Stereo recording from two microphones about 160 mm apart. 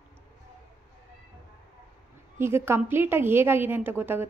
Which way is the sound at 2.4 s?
15° right (ahead or behind).